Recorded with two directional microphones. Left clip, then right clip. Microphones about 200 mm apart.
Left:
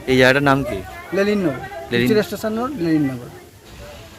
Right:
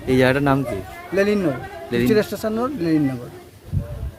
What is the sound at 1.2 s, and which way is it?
Speech, 25° right (ahead or behind).